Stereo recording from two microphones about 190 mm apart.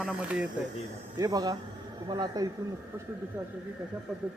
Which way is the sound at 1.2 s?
20° right (ahead or behind).